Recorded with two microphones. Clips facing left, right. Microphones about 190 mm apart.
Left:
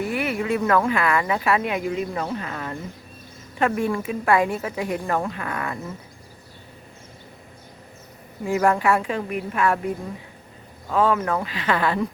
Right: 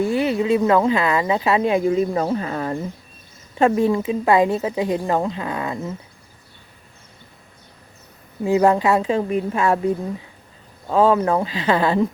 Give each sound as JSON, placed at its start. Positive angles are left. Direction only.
{"t": 0.0, "sound": "speech", "side_deg": -25}
{"t": 8.4, "sound": "speech", "side_deg": -20}